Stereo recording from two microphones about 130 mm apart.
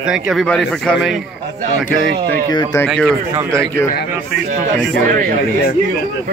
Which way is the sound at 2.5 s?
30° left (ahead or behind).